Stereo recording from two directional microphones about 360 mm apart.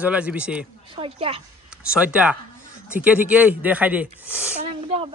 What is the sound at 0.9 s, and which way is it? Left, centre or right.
Speech, centre.